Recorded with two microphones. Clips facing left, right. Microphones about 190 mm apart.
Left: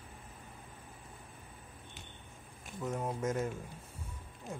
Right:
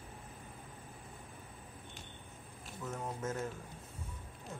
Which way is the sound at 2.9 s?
10° left (ahead or behind).